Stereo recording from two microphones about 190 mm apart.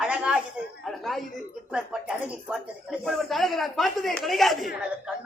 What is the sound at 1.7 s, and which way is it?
Speech, 5° right (ahead or behind).